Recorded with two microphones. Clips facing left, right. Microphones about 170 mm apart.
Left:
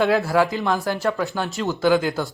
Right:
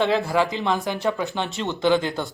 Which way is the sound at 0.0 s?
5° left (ahead or behind).